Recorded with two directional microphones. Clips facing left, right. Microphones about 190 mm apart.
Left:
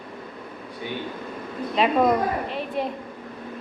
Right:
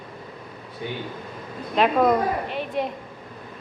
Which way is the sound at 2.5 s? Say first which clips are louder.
Right 1 dB; centre (ahead or behind).